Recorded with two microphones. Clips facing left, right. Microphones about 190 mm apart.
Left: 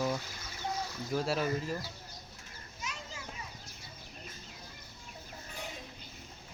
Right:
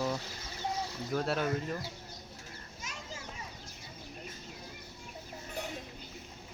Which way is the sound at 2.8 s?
50° right (ahead or behind).